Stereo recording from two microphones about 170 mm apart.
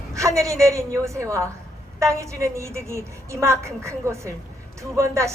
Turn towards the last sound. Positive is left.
turn(degrees=-15)  # may be behind; listen again after turning